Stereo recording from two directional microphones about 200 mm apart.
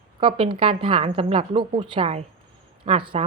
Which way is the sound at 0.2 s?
25° right (ahead or behind).